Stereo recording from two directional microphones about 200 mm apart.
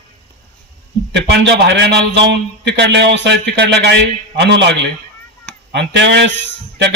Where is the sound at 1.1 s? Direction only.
55° right (ahead or behind).